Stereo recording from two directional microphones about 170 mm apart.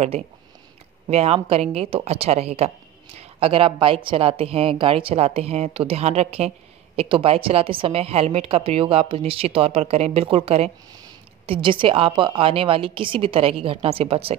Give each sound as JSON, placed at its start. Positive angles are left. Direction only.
{"t": 1.0, "sound": "a woman's voice", "side_deg": -35}